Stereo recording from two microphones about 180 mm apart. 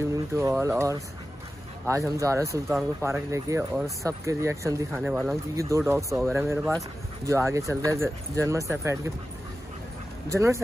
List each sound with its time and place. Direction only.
0.3 s speech: 15° right (ahead or behind)
5.6 s speech: 15° right (ahead or behind)
10.3 s speech: 15° right (ahead or behind)